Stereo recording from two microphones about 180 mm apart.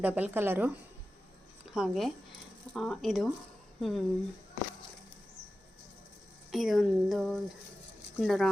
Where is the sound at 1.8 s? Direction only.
Centre (ahead or behind).